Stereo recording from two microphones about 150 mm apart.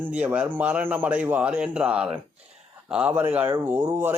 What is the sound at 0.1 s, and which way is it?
Speech, 10° right (ahead or behind).